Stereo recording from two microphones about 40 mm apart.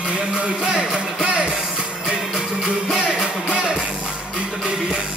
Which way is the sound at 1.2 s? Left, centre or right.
Right.